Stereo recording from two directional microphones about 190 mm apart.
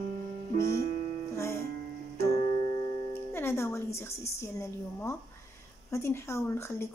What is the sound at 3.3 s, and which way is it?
Music, 15° left (ahead or behind).